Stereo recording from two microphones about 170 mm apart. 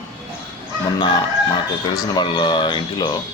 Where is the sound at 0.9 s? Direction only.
25° left (ahead or behind).